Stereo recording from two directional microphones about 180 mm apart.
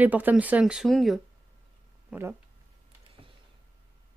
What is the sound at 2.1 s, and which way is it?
Speech, 15° right (ahead or behind).